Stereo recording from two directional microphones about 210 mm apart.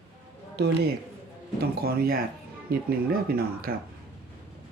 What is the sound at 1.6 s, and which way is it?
Speech, 45° right (ahead or behind).